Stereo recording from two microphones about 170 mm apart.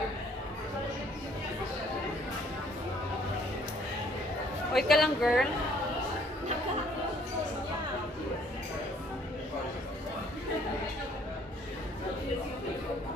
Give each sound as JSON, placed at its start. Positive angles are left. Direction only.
{"t": 4.7, "sound": "a woman's voice", "side_deg": 0}